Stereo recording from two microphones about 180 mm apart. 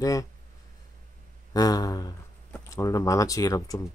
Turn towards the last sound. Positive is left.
turn(degrees=20)  # may be behind; listen again after turning